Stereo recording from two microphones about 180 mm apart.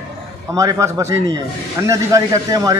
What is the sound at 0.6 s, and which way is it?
A man's voice, 15° right (ahead or behind).